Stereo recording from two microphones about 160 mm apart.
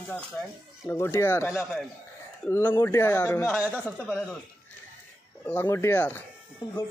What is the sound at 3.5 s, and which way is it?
Speech, 5° right (ahead or behind).